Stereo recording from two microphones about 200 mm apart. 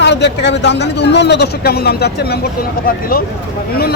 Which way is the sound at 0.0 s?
60° left (ahead or behind).